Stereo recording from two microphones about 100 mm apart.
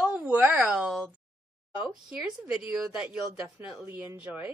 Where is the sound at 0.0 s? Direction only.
10° right (ahead or behind).